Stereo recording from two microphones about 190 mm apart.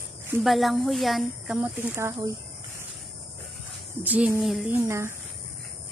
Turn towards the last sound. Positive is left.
turn(degrees=-15)  # may be behind; listen again after turning